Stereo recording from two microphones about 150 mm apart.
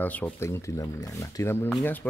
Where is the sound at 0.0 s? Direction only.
10° left (ahead or behind).